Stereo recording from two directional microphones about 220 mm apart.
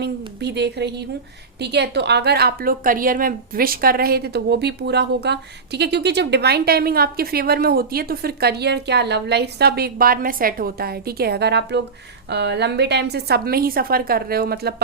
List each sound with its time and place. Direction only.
0.0 s a woman's voice: 50° right (ahead or behind)